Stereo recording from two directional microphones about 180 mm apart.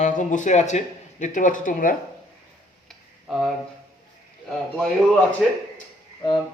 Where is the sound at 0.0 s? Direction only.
45° left (ahead or behind).